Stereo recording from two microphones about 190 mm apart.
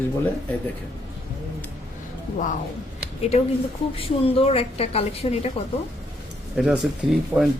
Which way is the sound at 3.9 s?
30° left (ahead or behind).